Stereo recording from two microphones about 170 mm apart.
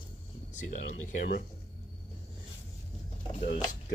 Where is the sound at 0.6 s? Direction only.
45° left (ahead or behind).